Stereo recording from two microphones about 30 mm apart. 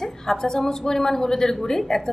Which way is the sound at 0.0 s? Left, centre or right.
Centre.